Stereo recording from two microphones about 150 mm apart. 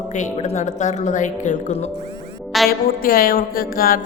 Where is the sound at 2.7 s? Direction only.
75° left (ahead or behind).